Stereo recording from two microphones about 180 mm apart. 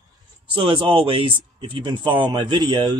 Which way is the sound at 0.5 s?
30° right (ahead or behind).